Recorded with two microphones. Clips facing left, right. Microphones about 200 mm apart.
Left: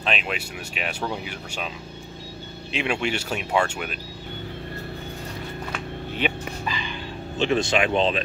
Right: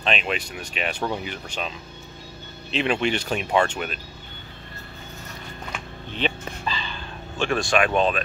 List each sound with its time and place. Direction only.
0.0 s speech: 5° left (ahead or behind)
2.7 s speech: 10° left (ahead or behind)
6.1 s a sound: 10° left (ahead or behind)